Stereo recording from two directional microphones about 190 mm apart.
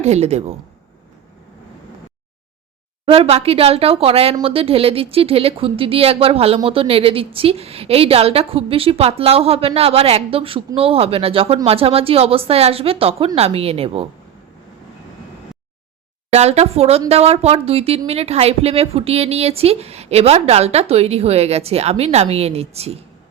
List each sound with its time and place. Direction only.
0.0 s speech: 35° right (ahead or behind)
3.1 s speech: 30° right (ahead or behind)
16.3 s speech: 35° right (ahead or behind)